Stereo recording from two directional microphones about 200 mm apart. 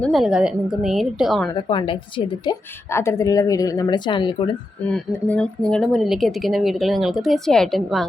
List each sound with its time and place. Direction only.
0.0 s speech: centre (ahead or behind)
1.7 s a woman's voice: 25° left (ahead or behind)
4.9 s speech: 5° left (ahead or behind)